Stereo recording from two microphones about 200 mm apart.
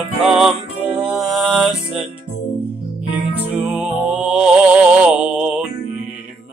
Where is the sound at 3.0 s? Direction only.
10° right (ahead or behind).